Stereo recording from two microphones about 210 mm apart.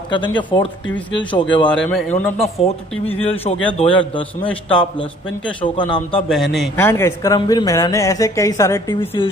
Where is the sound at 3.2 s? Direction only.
25° left (ahead or behind).